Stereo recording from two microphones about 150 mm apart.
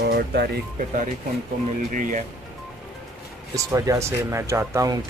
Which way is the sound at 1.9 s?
60° right (ahead or behind).